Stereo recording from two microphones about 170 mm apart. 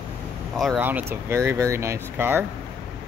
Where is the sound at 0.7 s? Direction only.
10° right (ahead or behind).